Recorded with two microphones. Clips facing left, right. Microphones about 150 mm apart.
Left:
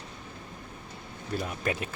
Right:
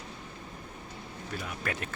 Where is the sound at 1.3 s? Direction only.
25° left (ahead or behind).